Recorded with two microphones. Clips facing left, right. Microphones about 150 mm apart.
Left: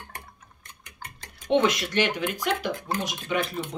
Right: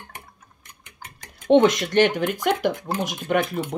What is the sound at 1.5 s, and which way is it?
Speech, 45° right (ahead or behind).